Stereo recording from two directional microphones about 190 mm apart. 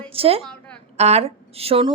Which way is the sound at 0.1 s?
30° right (ahead or behind).